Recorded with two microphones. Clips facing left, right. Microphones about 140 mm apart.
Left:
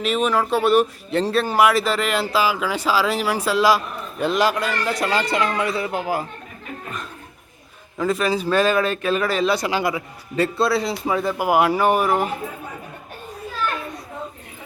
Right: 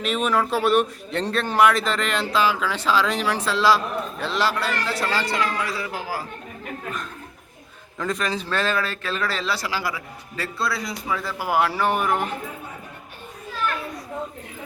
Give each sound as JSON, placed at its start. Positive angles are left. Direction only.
{"t": 0.0, "sound": "a man's voice", "side_deg": 0}
{"t": 7.9, "sound": "a man's voice", "side_deg": 5}